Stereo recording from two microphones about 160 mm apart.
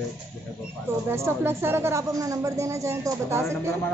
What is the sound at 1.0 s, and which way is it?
Speech, 15° right (ahead or behind).